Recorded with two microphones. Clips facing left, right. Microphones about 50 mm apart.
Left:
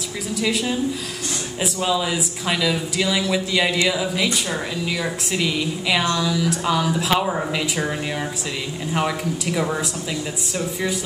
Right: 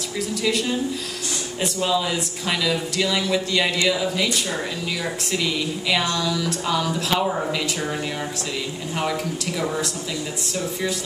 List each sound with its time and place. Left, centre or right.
0.3 s a woman's voice: centre
8.9 s speech: centre